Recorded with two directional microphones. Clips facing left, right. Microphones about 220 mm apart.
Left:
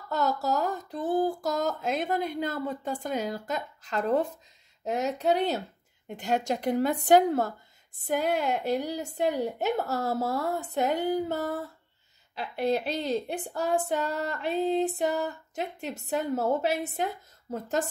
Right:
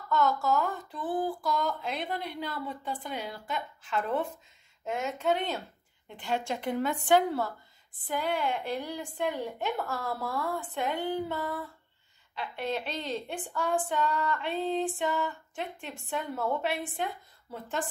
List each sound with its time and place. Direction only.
0.1 s speech: 35° left (ahead or behind)